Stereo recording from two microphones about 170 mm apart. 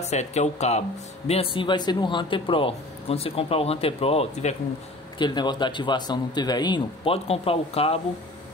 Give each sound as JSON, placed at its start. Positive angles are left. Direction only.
{"t": 0.0, "sound": "speech", "side_deg": 40}
{"t": 5.2, "sound": "speech", "side_deg": 25}